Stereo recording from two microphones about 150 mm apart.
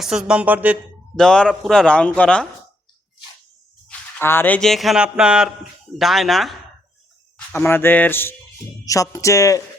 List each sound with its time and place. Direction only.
0.0 s speech: 5° right (ahead or behind)
1.1 s a man's voice: 5° left (ahead or behind)
3.8 s a man's voice: 15° left (ahead or behind)
7.3 s speech: 15° left (ahead or behind)